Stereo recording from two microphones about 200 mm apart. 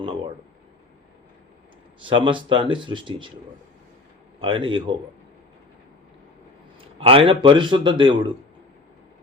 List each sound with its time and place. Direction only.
2.0 s speech: 25° right (ahead or behind)
4.4 s speech: 25° right (ahead or behind)
7.0 s speech: 30° right (ahead or behind)